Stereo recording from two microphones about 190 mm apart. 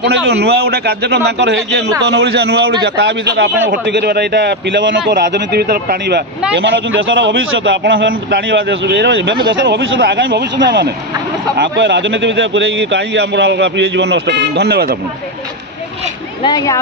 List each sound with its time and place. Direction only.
0.0 s a man's voice: 60° right (ahead or behind)
6.5 s a man's voice: 70° right (ahead or behind)
16.4 s speech: 20° left (ahead or behind)